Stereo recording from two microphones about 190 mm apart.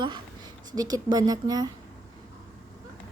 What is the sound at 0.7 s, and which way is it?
Speech, 20° right (ahead or behind).